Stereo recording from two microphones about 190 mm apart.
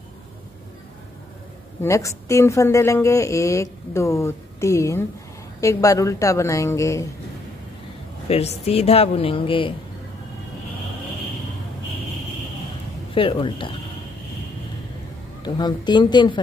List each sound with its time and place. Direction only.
1.8 s a woman's voice: 15° left (ahead or behind)
8.3 s speech: 35° left (ahead or behind)
13.1 s speech: 25° left (ahead or behind)
15.4 s speech: 20° left (ahead or behind)